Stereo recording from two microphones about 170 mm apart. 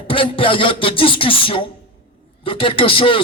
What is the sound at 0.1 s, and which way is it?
Speech, 30° left (ahead or behind).